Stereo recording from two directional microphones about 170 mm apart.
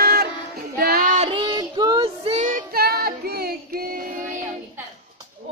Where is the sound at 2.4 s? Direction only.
55° right (ahead or behind).